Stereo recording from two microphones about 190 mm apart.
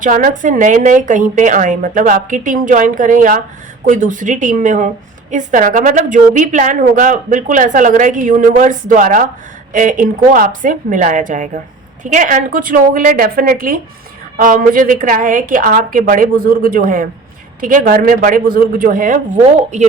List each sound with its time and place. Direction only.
0.0 s a woman's voice: 45° right (ahead or behind)